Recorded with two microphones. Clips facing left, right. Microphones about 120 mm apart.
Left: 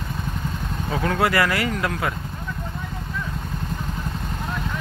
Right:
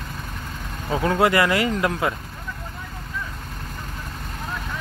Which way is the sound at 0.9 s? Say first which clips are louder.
Right 3 dB; 20° right (ahead or behind).